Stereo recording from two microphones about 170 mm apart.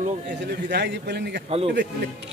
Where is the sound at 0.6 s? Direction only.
90° right.